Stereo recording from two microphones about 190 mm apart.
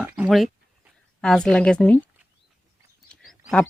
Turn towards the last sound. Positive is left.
turn(degrees=0)  # may be behind; listen again after turning